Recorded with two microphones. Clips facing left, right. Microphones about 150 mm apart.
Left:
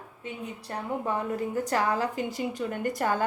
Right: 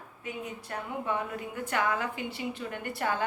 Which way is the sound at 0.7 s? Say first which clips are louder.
Left 3 dB; 35° left (ahead or behind).